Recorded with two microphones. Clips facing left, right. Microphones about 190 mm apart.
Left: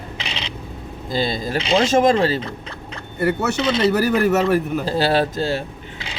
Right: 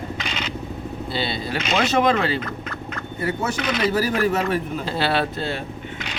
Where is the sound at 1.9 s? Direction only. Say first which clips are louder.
Left 3 dB; 40° left (ahead or behind).